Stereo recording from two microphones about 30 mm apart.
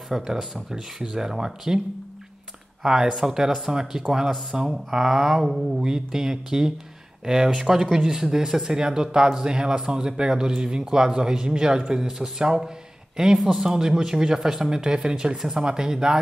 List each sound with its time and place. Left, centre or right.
0.1 s speech: centre
2.8 s a man's voice: centre
5.9 s a man's voice: centre
12.6 s a sound: right
13.5 s a man's voice: centre